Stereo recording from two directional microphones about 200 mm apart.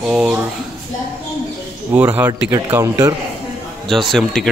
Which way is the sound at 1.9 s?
10° right (ahead or behind).